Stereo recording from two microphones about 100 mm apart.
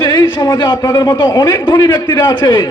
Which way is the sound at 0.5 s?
55° left (ahead or behind).